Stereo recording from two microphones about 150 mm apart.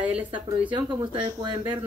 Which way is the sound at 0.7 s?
30° right (ahead or behind).